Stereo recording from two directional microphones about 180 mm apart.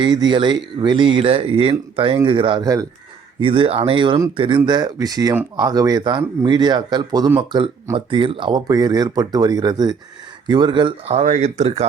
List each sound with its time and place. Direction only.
0.0 s speech: 25° right (ahead or behind)